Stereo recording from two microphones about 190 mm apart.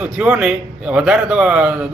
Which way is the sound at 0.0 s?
5° right (ahead or behind).